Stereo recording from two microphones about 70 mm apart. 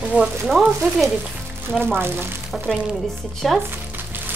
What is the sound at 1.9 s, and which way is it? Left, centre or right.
Speech, right.